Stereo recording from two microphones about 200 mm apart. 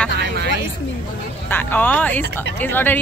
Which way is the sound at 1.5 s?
10° left (ahead or behind).